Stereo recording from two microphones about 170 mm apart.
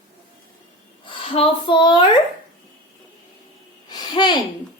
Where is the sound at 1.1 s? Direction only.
30° left (ahead or behind).